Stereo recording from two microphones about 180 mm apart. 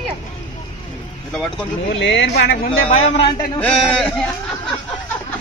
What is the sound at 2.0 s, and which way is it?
Speech, 70° left (ahead or behind).